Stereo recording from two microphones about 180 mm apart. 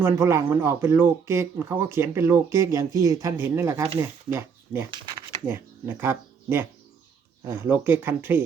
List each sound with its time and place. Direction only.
0.0 s speech: 15° right (ahead or behind)
5.5 s speech: 15° right (ahead or behind)